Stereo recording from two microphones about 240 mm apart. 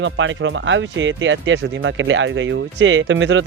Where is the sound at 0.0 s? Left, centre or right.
Right.